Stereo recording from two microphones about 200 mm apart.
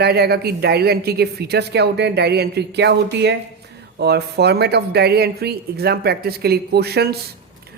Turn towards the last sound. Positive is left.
turn(degrees=-55)  # may be behind; listen again after turning